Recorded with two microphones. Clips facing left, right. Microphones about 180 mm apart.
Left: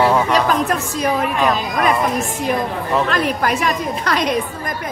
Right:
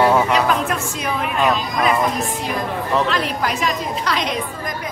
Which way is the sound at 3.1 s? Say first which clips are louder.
Left 3 dB; 50° left (ahead or behind).